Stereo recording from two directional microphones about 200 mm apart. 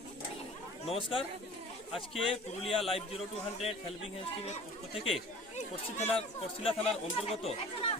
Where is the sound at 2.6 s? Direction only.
30° left (ahead or behind).